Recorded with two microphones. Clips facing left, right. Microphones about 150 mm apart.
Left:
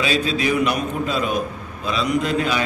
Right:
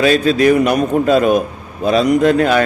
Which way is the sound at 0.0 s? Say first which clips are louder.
Right 9 dB; 50° right (ahead or behind).